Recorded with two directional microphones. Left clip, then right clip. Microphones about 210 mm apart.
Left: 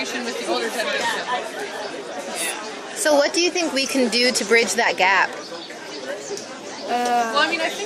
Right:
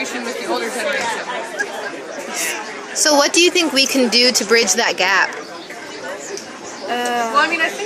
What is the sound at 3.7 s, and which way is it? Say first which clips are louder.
Speech: right 5 dB; 15° right (ahead or behind).